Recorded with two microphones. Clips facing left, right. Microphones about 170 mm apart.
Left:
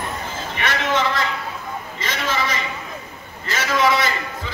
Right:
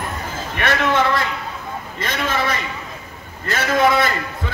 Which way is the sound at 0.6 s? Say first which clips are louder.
Right 3 dB; 55° right (ahead or behind).